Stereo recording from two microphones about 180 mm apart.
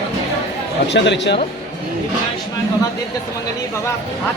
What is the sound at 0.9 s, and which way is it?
Speech, 75° left (ahead or behind).